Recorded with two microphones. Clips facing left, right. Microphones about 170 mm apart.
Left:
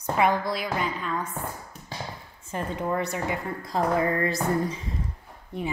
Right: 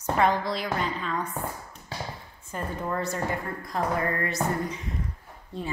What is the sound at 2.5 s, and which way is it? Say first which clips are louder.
Speech: left 3 dB; 15° left (ahead or behind).